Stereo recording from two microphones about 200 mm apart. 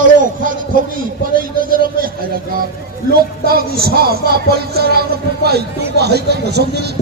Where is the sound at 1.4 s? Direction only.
45° right (ahead or behind).